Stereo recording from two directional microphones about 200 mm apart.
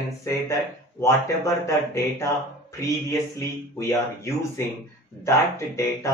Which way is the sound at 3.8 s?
15° left (ahead or behind).